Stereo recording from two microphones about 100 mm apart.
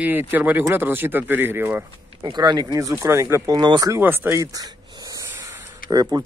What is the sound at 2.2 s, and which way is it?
Speech, 45° right (ahead or behind).